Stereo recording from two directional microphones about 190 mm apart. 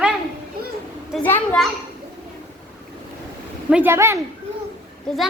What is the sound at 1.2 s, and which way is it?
Speech, 5° left (ahead or behind).